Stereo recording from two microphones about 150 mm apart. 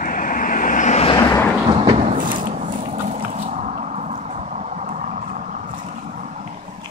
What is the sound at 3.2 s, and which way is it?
Vehicle, 45° right (ahead or behind).